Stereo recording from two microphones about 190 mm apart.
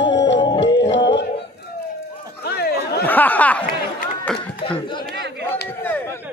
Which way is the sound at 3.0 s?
10° left (ahead or behind).